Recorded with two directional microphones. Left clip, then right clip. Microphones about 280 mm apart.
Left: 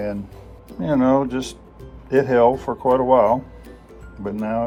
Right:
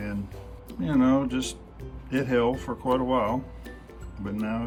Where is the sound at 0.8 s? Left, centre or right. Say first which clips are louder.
Left 6 dB; centre.